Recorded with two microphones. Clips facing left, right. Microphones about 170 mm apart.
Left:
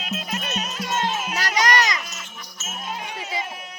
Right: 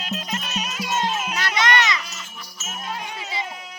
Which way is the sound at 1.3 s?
40° left (ahead or behind).